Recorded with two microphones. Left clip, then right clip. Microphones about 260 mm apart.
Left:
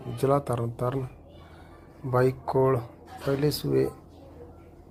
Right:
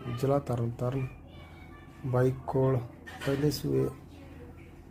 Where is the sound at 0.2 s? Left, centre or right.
Centre.